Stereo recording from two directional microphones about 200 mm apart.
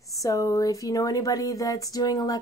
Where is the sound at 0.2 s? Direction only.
15° left (ahead or behind).